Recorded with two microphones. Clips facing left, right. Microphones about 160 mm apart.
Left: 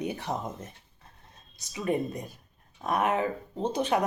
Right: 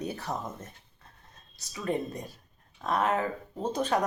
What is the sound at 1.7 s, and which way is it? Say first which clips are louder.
Speech: left 2 dB; 15° left (ahead or behind).